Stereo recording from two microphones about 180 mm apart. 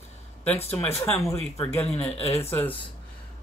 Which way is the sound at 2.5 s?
10° left (ahead or behind).